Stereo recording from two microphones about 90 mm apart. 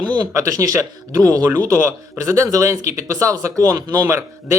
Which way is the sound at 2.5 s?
35° right (ahead or behind).